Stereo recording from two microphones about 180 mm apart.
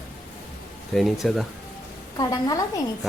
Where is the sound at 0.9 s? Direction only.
Centre (ahead or behind).